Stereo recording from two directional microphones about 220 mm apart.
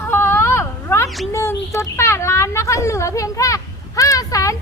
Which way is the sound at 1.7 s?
15° left (ahead or behind).